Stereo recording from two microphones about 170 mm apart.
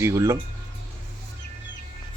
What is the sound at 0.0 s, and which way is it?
Speech, 15° right (ahead or behind).